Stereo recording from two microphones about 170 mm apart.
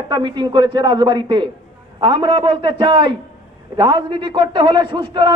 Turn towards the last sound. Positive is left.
turn(degrees=-30)  # may be behind; listen again after turning